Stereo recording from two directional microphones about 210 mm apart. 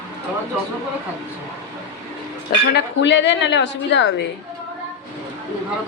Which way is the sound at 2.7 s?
60° left (ahead or behind).